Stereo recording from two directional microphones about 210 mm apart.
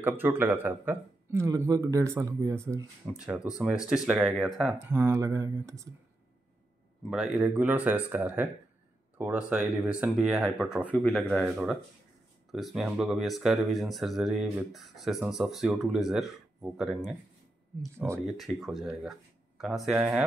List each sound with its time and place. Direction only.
0.0 s speech: 10° right (ahead or behind)
7.1 s speech: centre (ahead or behind)
17.9 s speech: 10° right (ahead or behind)
18.2 s speech: centre (ahead or behind)